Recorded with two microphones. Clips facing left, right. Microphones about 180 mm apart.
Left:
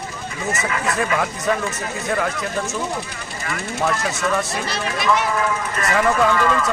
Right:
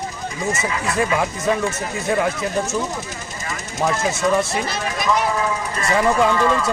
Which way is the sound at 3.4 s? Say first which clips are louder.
Even; 20° right (ahead or behind).